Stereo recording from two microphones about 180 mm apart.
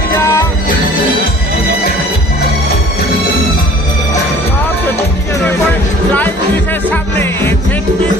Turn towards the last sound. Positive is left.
turn(degrees=15)  # may be behind; listen again after turning